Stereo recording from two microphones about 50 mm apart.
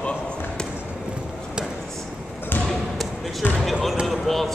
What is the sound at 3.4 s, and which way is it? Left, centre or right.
Basketball bounce, left.